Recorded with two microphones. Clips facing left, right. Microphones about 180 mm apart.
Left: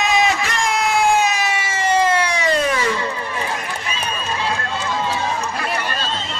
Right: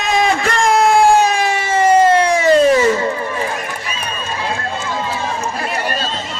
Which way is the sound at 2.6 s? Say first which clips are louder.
Right 8 dB; 30° right (ahead or behind).